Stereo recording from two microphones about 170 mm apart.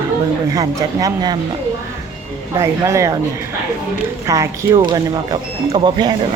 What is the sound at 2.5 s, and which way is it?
Speech, 15° right (ahead or behind).